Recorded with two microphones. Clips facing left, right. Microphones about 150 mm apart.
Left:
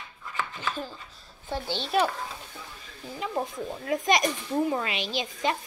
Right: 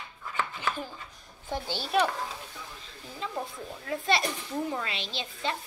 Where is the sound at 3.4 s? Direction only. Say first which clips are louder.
Left 6 dB; 20° left (ahead or behind).